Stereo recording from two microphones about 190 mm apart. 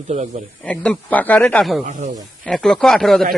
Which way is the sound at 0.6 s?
5° left (ahead or behind).